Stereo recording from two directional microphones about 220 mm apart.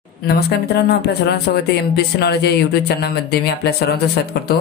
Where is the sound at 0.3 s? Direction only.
45° left (ahead or behind).